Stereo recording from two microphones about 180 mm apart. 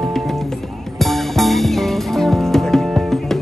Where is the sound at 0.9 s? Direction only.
Centre (ahead or behind).